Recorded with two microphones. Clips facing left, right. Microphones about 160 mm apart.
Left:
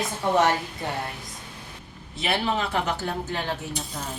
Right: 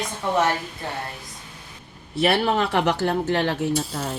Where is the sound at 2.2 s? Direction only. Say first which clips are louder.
Right 6 dB; 65° right (ahead or behind).